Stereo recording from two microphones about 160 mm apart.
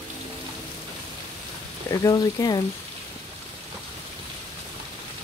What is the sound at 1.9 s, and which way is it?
Speech, 25° left (ahead or behind).